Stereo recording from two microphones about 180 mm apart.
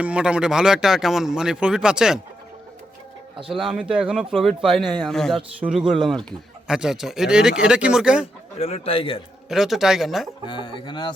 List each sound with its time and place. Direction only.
0.0 s speech: 5° right (ahead or behind)
3.3 s speech: 30° right (ahead or behind)
3.6 s speech: centre (ahead or behind)
8.5 s a man's voice: 35° left (ahead or behind)
9.5 s speech: centre (ahead or behind)
10.4 s speech: 25° left (ahead or behind)